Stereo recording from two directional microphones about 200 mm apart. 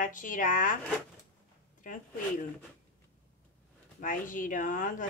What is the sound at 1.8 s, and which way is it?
Speech, 45° left (ahead or behind).